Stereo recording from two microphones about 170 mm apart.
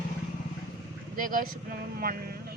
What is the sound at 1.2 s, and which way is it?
Speech, 55° right (ahead or behind).